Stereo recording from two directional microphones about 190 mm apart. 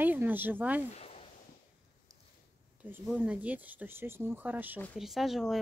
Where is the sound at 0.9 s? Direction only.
35° left (ahead or behind).